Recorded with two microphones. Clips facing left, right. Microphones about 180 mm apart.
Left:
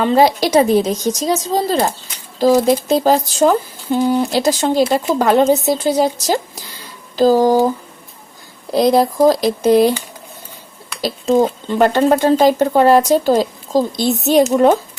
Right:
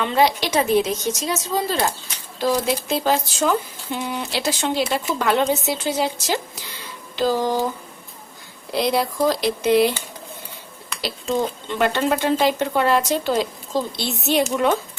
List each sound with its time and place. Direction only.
0.0 s speech: 40° left (ahead or behind)
8.7 s speech: 40° left (ahead or behind)
11.0 s speech: 40° left (ahead or behind)